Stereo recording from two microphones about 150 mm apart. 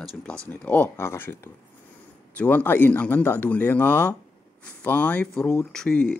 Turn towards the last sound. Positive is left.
turn(degrees=5)  # may be behind; listen again after turning